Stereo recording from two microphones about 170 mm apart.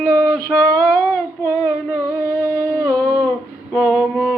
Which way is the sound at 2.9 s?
5° left (ahead or behind).